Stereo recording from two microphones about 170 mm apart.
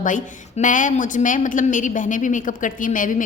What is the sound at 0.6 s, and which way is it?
A man's voice, 50° left (ahead or behind).